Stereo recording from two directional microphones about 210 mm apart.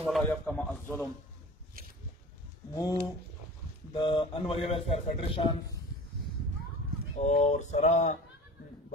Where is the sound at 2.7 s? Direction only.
15° left (ahead or behind).